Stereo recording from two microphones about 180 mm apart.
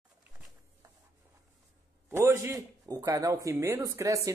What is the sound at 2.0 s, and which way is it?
Speech, 15° right (ahead or behind).